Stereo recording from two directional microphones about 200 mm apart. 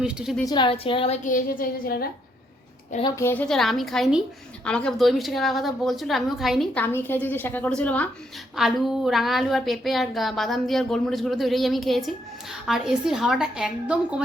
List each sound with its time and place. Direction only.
0.0 s a woman's voice: 5° right (ahead or behind)
0.4 s a woman's voice: 25° left (ahead or behind); by 2.0 s 45° left (ahead or behind)
3.0 s a woman's voice: 15° left (ahead or behind); by 14.3 s 5° right (ahead or behind)